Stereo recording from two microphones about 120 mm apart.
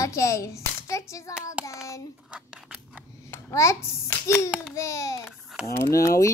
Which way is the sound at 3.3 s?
25° left (ahead or behind).